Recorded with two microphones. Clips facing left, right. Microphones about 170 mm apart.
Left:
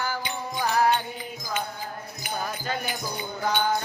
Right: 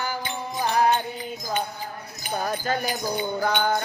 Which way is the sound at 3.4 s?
65° right (ahead or behind).